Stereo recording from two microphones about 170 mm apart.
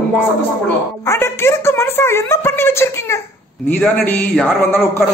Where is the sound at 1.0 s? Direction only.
15° left (ahead or behind).